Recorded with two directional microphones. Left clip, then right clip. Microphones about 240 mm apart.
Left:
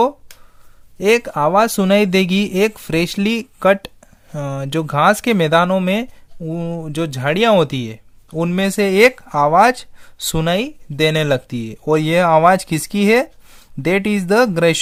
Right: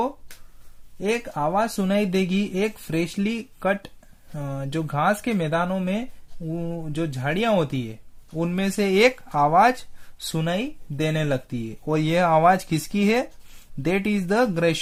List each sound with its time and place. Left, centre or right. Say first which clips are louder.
0.9 s speech: left 10 dB; left